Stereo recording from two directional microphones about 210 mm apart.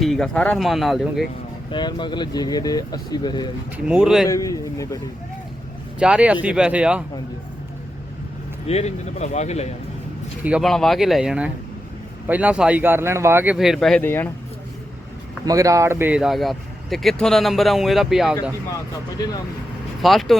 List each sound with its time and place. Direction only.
0.0 s speech: centre (ahead or behind)
1.7 s speech: 20° left (ahead or behind)
3.8 s speech: 5° right (ahead or behind)
4.3 s a man's voice: 15° left (ahead or behind)
6.0 s speech: 5° right (ahead or behind)
8.6 s a man's voice: 30° left (ahead or behind)
10.4 s speech: centre (ahead or behind)
15.4 s speech: 15° right (ahead or behind)
20.0 s speech: centre (ahead or behind)